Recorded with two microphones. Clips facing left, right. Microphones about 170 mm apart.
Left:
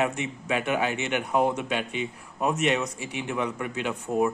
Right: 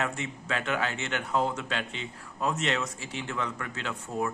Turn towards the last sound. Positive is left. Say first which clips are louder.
# left 7 dB
turn(degrees=20)  # may be behind; listen again after turning